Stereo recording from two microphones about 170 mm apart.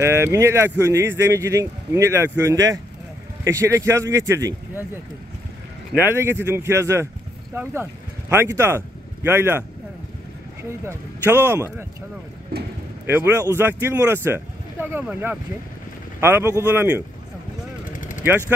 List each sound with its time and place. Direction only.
0.0 s speech: 15° right (ahead or behind)
6.0 s speech: 15° right (ahead or behind)
12.5 s speech: 70° right (ahead or behind)
13.0 s speech: 15° right (ahead or behind)